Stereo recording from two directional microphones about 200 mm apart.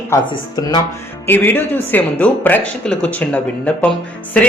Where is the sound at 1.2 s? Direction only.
10° left (ahead or behind).